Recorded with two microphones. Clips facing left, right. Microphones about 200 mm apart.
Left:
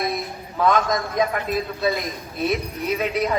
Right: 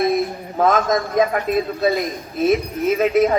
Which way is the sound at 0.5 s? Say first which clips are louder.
Right 3 dB; 45° right (ahead or behind).